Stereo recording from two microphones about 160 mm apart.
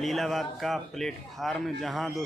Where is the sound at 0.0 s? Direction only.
Centre (ahead or behind).